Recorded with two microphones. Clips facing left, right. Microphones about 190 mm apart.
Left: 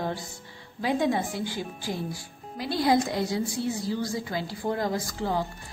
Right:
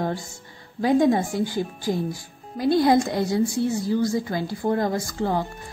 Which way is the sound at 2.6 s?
50° right (ahead or behind).